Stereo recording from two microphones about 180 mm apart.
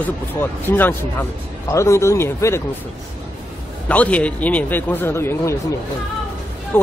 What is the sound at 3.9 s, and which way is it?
Speech, 10° left (ahead or behind).